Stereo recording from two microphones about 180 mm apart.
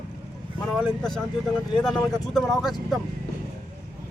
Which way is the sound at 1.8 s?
Centre (ahead or behind).